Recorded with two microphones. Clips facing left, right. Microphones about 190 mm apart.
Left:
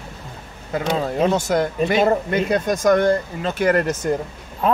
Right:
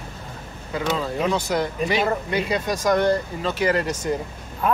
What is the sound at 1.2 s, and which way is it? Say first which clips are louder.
Speech: left 3 dB; 45° left (ahead or behind).